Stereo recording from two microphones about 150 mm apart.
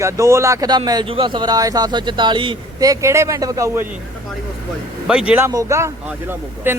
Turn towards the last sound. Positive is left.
turn(degrees=-15)  # may be behind; listen again after turning